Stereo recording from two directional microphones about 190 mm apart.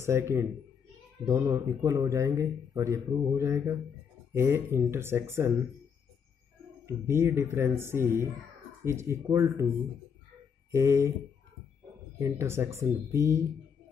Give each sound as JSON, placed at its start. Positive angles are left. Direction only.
{"t": 0.0, "sound": "speech", "side_deg": -15}
{"t": 6.9, "sound": "speech", "side_deg": -15}
{"t": 10.7, "sound": "speech", "side_deg": -15}
{"t": 12.2, "sound": "speech", "side_deg": -15}